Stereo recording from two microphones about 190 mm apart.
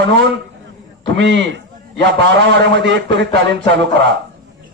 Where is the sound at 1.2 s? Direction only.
70° right (ahead or behind).